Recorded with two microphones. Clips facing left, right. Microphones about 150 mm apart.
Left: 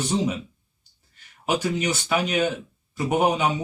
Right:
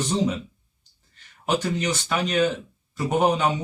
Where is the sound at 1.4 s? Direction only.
10° left (ahead or behind).